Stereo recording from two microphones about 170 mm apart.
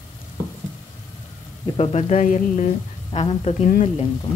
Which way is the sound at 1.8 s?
40° left (ahead or behind).